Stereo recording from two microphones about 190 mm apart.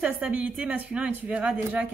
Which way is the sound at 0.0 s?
10° right (ahead or behind).